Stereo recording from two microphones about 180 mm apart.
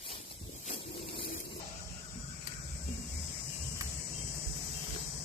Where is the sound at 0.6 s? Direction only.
30° left (ahead or behind).